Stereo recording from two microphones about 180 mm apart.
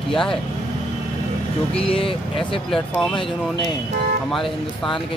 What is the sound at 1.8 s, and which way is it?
Speech, 30° left (ahead or behind).